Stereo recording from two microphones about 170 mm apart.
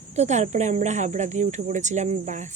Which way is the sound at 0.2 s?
45° right (ahead or behind).